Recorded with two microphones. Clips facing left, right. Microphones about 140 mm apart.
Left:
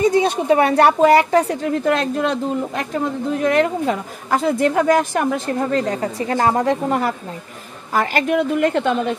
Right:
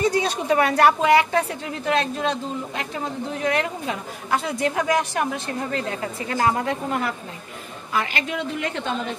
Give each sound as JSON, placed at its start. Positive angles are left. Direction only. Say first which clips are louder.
{"t": 0.0, "sound": "a woman's voice", "louder": "left 6 dB", "side_deg": 25}